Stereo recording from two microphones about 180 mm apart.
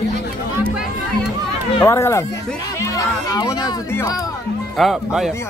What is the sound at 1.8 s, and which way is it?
Speech, 15° left (ahead or behind).